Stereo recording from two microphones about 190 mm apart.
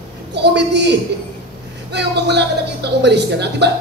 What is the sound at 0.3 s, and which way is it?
A woman's voice, 65° right (ahead or behind).